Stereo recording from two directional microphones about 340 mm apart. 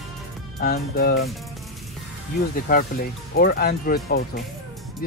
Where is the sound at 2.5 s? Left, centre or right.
Left.